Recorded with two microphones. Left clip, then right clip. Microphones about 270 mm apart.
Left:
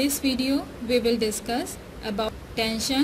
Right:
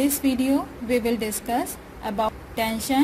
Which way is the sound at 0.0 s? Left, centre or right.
Centre.